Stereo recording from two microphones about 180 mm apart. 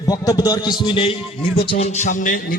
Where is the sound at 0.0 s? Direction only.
20° left (ahead or behind).